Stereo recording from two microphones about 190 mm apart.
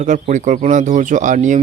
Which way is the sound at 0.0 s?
40° right (ahead or behind).